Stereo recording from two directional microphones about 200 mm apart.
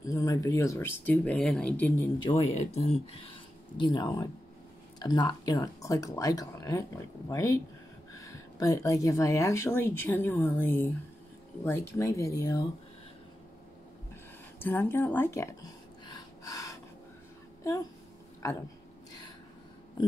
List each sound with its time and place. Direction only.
0.0 s speech: 15° left (ahead or behind)
2.2 s speech: 30° left (ahead or behind); by 12.6 s 15° left (ahead or behind)
14.6 s a sound: 10° left (ahead or behind)